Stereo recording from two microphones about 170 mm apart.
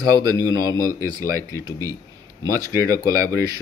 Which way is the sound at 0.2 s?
20° right (ahead or behind).